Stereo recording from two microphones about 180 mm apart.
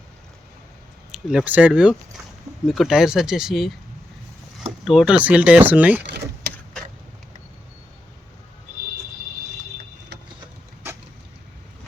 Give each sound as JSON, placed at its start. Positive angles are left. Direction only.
{"t": 1.1, "sound": "speech", "side_deg": -5}
{"t": 4.9, "sound": "speech", "side_deg": -5}
{"t": 6.1, "sound": "power windows", "side_deg": -70}